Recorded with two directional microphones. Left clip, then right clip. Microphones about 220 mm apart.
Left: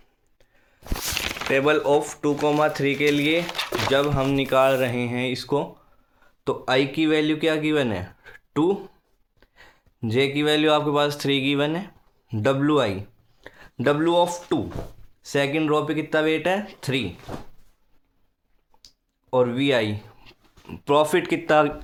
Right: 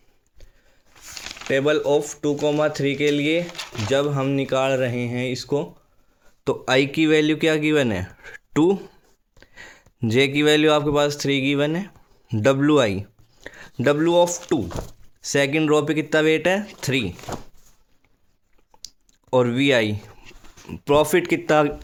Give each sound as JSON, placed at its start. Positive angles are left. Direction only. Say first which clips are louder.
{"t": 0.9, "sound": "a sound", "louder": "left 9 dB", "side_deg": 40}
{"t": 1.5, "sound": "speech", "louder": "right 1 dB", "side_deg": -30}
{"t": 6.4, "sound": "speech", "louder": "right 2 dB", "side_deg": -45}
{"t": 19.3, "sound": "speech", "louder": "right 2 dB", "side_deg": -50}